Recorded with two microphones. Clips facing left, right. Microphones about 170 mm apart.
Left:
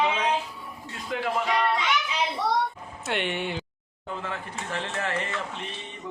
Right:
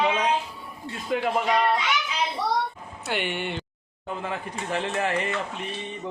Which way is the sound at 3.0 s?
Centre (ahead or behind).